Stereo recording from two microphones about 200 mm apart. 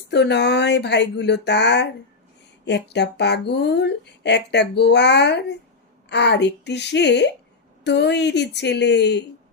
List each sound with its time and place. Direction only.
0.1 s speech: 60° left (ahead or behind)